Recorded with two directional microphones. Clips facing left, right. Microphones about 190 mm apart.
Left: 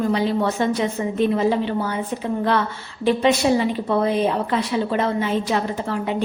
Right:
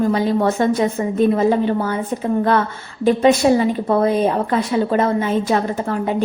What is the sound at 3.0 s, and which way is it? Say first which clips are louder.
A woman's voice: right 4 dB; 45° right (ahead or behind).